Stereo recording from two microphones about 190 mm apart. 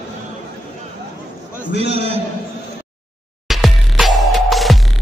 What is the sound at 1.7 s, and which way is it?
Speech, 65° left (ahead or behind).